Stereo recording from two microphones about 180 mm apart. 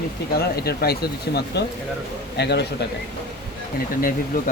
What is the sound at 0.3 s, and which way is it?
Speech, 60° left (ahead or behind).